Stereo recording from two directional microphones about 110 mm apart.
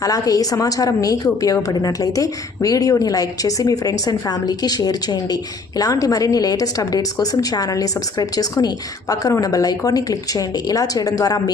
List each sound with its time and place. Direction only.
0.0 s a woman's voice: 35° left (ahead or behind)